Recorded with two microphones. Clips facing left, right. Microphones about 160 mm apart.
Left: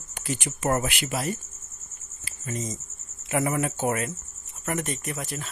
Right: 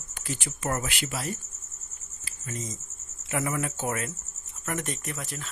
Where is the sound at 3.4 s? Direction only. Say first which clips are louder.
Left 5 dB; 45° left (ahead or behind).